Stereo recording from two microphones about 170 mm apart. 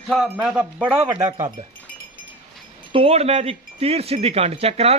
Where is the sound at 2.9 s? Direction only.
35° right (ahead or behind).